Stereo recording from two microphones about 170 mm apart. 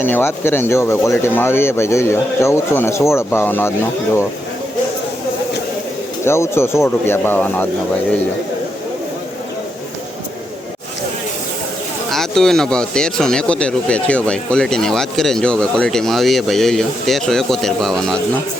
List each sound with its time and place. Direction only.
0.0 s speech: 15° left (ahead or behind)
6.2 s speech: 15° left (ahead or behind)
12.1 s speech: centre (ahead or behind)